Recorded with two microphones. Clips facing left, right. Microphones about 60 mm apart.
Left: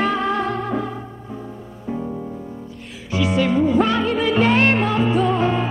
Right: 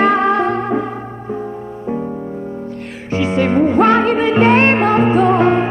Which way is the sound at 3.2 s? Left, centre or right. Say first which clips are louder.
Right 4 dB; right.